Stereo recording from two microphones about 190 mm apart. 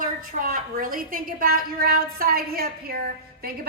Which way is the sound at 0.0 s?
45° right (ahead or behind).